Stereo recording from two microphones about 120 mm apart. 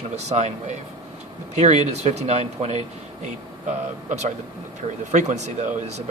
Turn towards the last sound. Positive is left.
turn(degrees=-85)